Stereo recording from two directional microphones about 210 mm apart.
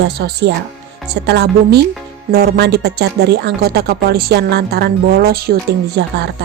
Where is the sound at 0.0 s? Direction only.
50° right (ahead or behind).